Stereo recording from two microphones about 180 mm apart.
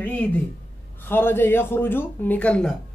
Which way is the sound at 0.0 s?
10° left (ahead or behind).